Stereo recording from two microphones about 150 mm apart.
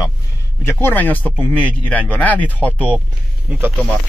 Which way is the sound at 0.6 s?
15° left (ahead or behind).